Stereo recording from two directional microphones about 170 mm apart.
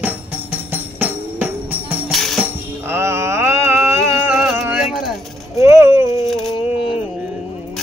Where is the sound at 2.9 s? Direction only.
15° right (ahead or behind).